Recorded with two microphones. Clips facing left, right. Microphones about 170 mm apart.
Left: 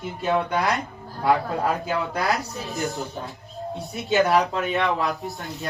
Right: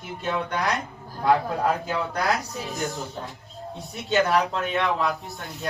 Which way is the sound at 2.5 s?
15° right (ahead or behind).